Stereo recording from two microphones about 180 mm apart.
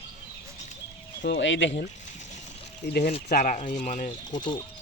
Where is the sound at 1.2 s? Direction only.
85° left.